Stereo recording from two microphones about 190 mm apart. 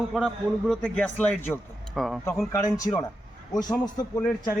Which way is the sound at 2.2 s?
15° left (ahead or behind).